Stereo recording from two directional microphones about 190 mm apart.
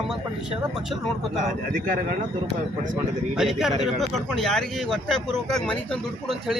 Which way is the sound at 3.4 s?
Centre (ahead or behind).